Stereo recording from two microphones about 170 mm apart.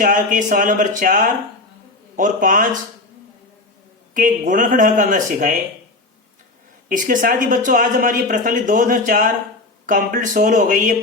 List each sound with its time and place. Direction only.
0.0 s speech: 50° right (ahead or behind)
4.1 s speech: 50° right (ahead or behind)
6.8 s speech: 50° right (ahead or behind)